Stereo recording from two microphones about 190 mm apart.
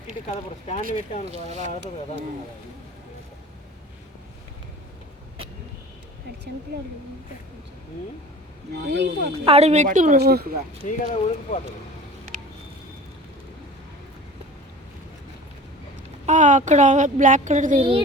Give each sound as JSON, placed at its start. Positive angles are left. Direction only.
{"t": 0.8, "sound": "speech", "side_deg": -45}
{"t": 8.8, "sound": "speech", "side_deg": -60}
{"t": 9.4, "sound": "a child's voice", "side_deg": -30}
{"t": 10.8, "sound": "speech", "side_deg": 40}
{"t": 16.2, "sound": "a child's voice", "side_deg": -40}